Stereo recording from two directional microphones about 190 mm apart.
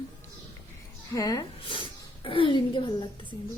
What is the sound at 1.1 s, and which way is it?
A woman's voice, 20° left (ahead or behind).